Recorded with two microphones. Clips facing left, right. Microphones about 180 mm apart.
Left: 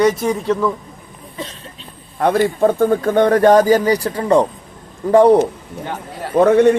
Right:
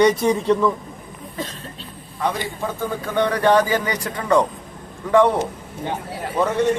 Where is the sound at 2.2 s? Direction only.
55° left (ahead or behind); by 5.4 s 35° left (ahead or behind).